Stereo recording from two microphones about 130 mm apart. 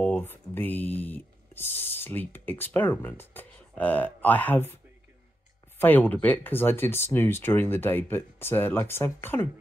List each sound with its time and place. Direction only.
0.0 s speech: 15° left (ahead or behind)
5.8 s speech: 15° left (ahead or behind)